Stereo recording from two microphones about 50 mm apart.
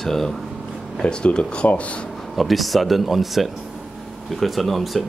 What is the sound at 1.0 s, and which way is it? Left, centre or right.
Speech, centre.